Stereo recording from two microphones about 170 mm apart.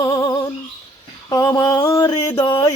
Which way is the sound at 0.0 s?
20° left (ahead or behind).